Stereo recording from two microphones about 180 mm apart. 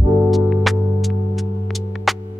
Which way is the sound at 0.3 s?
Centre (ahead or behind).